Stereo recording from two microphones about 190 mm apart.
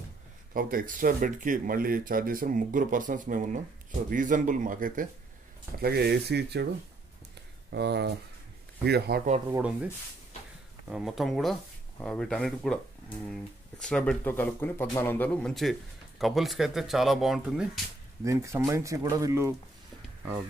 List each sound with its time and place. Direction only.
0.5 s speech: 50° right (ahead or behind)
5.8 s speech: 55° right (ahead or behind)
7.7 s speech: 60° right (ahead or behind)
9.5 s speech: 5° right (ahead or behind)
10.9 s speech: centre (ahead or behind)
18.2 s speech: 15° right (ahead or behind)